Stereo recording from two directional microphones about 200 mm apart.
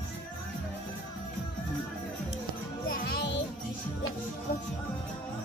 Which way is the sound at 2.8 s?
55° left (ahead or behind).